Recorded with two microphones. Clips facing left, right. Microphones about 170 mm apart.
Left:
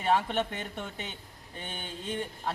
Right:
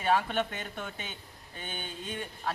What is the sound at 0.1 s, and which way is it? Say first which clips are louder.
Speech: left 1 dB; 25° left (ahead or behind).